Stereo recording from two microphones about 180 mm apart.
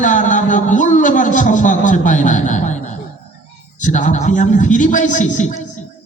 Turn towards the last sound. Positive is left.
turn(degrees=45)  # may be behind; listen again after turning